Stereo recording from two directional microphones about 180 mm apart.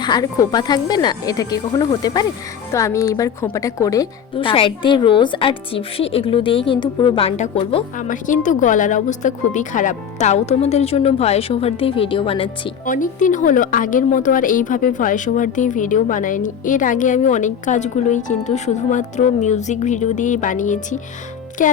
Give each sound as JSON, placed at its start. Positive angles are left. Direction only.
{"t": 0.0, "sound": "a woman's voice", "side_deg": 20}
{"t": 7.9, "sound": "a woman's voice", "side_deg": 45}
{"t": 12.8, "sound": "a woman's voice", "side_deg": 45}